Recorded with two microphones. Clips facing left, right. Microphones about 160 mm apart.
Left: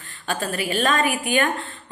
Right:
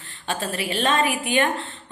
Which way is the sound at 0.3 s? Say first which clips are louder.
Left 1 dB; 30° right (ahead or behind).